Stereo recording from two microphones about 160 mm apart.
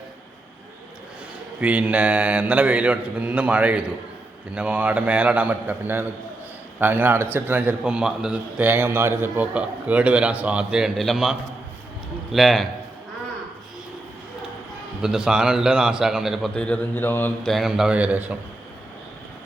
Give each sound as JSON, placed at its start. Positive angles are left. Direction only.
{"t": 1.6, "sound": "a man's voice", "side_deg": -10}
{"t": 15.0, "sound": "a man's voice", "side_deg": -5}
{"t": 17.5, "sound": "a man's voice", "side_deg": 0}